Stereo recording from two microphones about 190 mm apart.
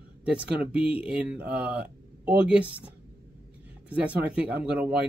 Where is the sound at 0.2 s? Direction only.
5° right (ahead or behind).